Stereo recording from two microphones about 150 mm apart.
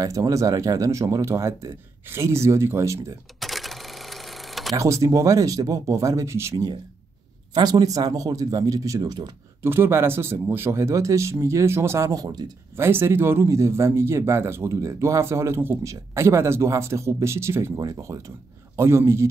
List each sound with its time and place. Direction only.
0.0 s speech: 20° right (ahead or behind)
3.3 s cash register: centre (ahead or behind)
4.7 s speech: 20° right (ahead or behind)
12.7 s speech: 15° right (ahead or behind)